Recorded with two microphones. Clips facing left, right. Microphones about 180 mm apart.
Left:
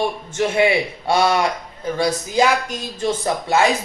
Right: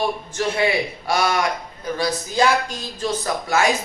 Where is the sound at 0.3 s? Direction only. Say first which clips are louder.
Left 4 dB; 20° left (ahead or behind).